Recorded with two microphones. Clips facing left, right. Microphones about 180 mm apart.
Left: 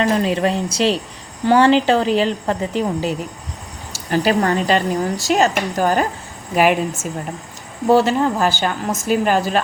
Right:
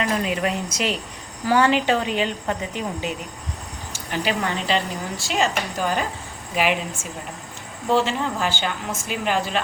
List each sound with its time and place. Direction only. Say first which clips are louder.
0.0 s a woman's voice: left 6 dB; 35° left (ahead or behind)